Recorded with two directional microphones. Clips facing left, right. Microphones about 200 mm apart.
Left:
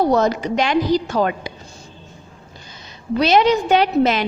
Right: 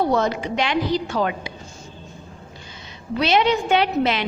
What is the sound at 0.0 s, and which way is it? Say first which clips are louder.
A woman's voice: left 4 dB; 40° left (ahead or behind).